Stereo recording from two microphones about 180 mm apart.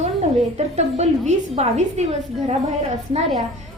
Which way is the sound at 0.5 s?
40° right (ahead or behind).